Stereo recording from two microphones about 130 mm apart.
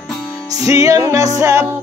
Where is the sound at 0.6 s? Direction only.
25° right (ahead or behind).